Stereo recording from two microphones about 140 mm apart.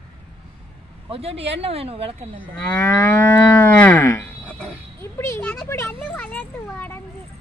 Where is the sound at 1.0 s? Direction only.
45° right (ahead or behind).